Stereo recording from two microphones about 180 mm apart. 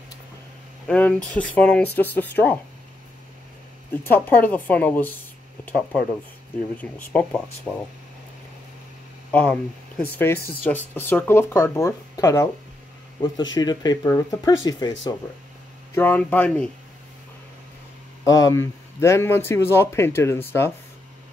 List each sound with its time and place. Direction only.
0.8 s speech: 5° left (ahead or behind)
3.9 s speech: 10° left (ahead or behind)
9.3 s speech: 10° left (ahead or behind)
13.6 s speech: 20° left (ahead or behind)
15.9 s speech: 10° left (ahead or behind)
18.2 s speech: 20° left (ahead or behind)